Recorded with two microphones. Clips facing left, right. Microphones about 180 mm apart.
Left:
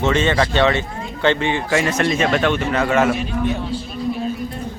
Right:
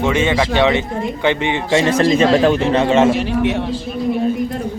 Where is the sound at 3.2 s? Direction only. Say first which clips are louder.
Right 5 dB; 75° right (ahead or behind).